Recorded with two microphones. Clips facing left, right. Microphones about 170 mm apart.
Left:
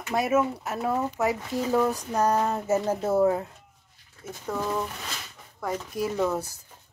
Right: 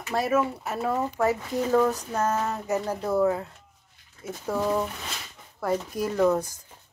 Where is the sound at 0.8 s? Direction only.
10° left (ahead or behind).